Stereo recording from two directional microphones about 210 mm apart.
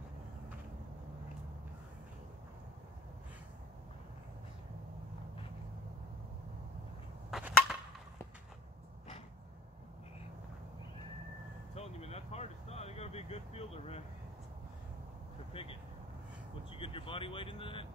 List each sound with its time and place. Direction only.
7.2 s a sound: centre (ahead or behind)
11.7 s vehicle: 30° left (ahead or behind)
15.5 s vehicle: 25° left (ahead or behind)
16.7 s speech: 25° left (ahead or behind)